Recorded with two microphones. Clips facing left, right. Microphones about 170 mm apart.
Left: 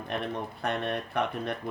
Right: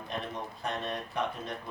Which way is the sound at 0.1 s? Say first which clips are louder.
Left 4 dB; 60° left (ahead or behind).